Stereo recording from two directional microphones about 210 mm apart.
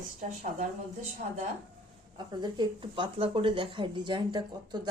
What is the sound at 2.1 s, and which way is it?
Speech, 20° right (ahead or behind).